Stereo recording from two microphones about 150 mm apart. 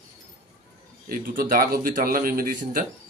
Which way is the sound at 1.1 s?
70° right (ahead or behind).